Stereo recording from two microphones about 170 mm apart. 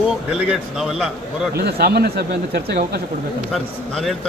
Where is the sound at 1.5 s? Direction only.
70° right (ahead or behind).